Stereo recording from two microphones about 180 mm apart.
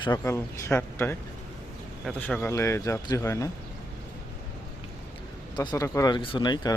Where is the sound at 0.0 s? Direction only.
20° left (ahead or behind).